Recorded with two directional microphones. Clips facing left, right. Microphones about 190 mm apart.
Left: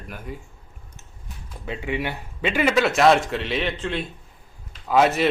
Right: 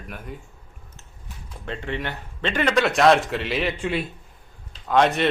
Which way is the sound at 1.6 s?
5° left (ahead or behind).